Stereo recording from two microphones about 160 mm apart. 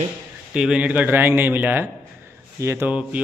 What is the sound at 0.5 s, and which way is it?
A man's voice, 5° right (ahead or behind).